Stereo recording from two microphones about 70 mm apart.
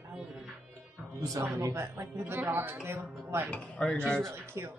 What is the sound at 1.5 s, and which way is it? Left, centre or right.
Speech, right.